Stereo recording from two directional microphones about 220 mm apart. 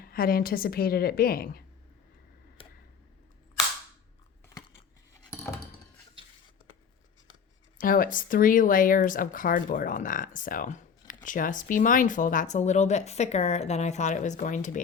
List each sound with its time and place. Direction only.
0.0 s a woman's voice: 40° left (ahead or behind)
2.6 s tick: 25° left (ahead or behind)
5.3 s a sound: 10° left (ahead or behind)
7.8 s speech: 40° left (ahead or behind)